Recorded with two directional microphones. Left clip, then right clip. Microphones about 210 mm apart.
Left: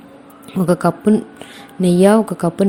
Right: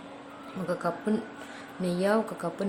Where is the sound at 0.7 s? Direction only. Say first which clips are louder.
Left 14 dB; 40° left (ahead or behind).